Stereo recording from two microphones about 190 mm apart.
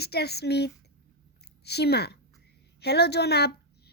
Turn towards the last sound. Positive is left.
turn(degrees=60)  # may be behind; listen again after turning